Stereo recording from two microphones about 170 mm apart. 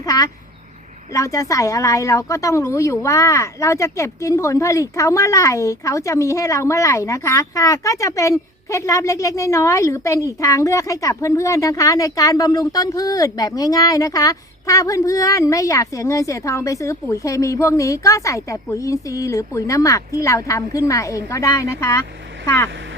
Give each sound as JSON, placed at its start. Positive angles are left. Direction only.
{"t": 0.0, "sound": "speech", "side_deg": 20}